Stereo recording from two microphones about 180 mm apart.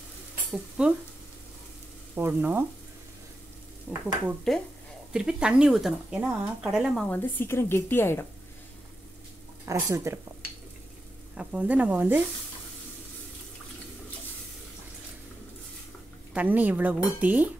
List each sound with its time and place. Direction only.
0.5 s speech: 5° right (ahead or behind)
2.1 s speech: 10° right (ahead or behind)
3.9 s speech: 5° right (ahead or behind)
7.1 s speech: 10° left (ahead or behind)
9.7 s speech: 15° right (ahead or behind)
11.3 s speech: 5° right (ahead or behind)
16.3 s speech: 10° right (ahead or behind)